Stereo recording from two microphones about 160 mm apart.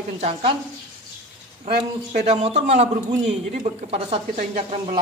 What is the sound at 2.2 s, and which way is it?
Speech, 40° right (ahead or behind).